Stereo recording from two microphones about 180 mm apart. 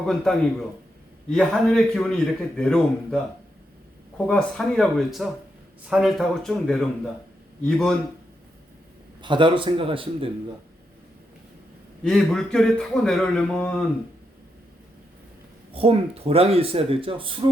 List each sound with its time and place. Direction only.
0.0 s a man's voice: centre (ahead or behind)
4.3 s a man's voice: 5° left (ahead or behind)
9.2 s a man's voice: 25° right (ahead or behind)
12.0 s a man's voice: centre (ahead or behind)
15.7 s speech: 30° right (ahead or behind)